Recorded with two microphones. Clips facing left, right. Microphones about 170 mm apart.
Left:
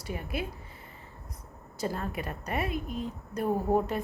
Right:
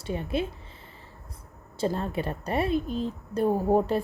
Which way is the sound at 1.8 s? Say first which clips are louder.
Right 5 dB; 25° right (ahead or behind).